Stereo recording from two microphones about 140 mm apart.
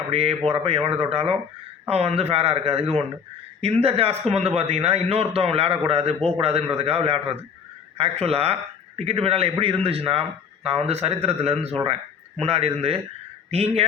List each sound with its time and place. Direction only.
0.1 s a man's voice: 45° right (ahead or behind)